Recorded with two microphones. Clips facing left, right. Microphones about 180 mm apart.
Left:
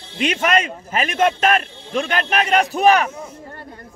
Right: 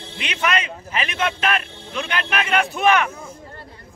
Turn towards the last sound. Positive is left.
turn(degrees=40)  # may be behind; listen again after turning